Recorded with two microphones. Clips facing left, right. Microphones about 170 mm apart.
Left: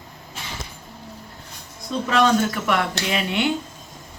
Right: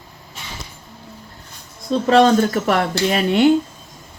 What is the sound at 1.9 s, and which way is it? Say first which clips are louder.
Speech: right 6 dB; 35° right (ahead or behind).